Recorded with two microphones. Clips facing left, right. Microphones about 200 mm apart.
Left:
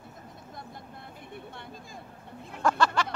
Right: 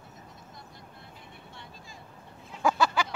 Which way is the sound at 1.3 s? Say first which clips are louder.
Left 9 dB; 55° left (ahead or behind).